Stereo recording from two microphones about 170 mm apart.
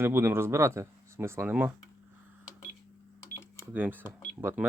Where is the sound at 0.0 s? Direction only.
15° right (ahead or behind).